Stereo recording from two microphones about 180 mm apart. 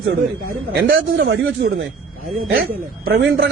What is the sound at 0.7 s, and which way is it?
A man's voice, 65° right (ahead or behind).